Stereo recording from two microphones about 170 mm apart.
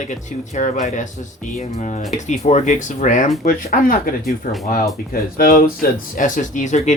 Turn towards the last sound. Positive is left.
turn(degrees=45)  # may be behind; listen again after turning